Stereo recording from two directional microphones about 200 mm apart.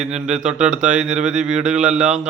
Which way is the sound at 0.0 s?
5° right (ahead or behind).